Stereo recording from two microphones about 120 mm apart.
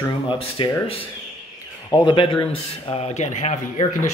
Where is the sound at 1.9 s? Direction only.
40° left (ahead or behind).